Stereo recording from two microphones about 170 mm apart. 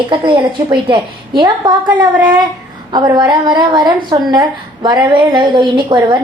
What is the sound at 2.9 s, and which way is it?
A woman's voice, 25° right (ahead or behind).